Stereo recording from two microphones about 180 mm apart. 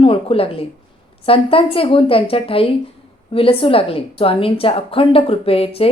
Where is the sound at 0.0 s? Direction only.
30° left (ahead or behind).